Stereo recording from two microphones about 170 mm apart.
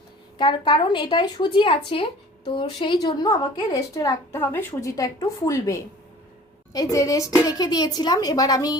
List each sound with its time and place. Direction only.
0.3 s a woman's voice: 30° left (ahead or behind)